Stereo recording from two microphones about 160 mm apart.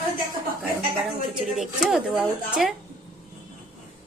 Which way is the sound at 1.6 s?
5° right (ahead or behind).